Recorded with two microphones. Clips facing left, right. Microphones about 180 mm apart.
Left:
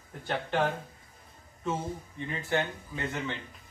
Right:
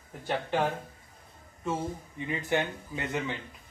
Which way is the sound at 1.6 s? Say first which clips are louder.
Right 1 dB; 10° right (ahead or behind).